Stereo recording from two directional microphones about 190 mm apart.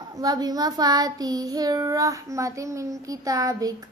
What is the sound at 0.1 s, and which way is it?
Child singing, 20° right (ahead or behind).